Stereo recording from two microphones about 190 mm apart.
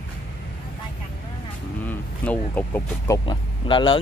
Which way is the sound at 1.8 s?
10° left (ahead or behind).